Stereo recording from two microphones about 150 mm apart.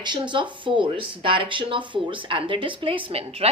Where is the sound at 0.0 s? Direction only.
30° right (ahead or behind).